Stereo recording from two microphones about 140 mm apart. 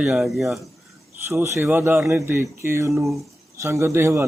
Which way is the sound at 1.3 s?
15° right (ahead or behind).